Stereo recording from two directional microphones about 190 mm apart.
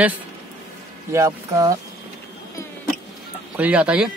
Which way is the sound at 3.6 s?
5° right (ahead or behind).